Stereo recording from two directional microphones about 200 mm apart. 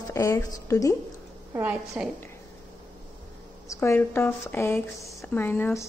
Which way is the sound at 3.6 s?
10° left (ahead or behind).